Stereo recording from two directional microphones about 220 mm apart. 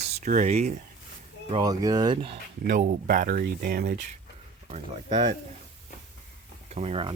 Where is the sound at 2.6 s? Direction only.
40° right (ahead or behind).